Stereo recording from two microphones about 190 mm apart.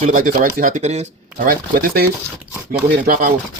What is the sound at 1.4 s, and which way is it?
Speech, 50° right (ahead or behind).